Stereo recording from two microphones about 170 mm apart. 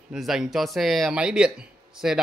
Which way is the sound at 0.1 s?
Centre (ahead or behind).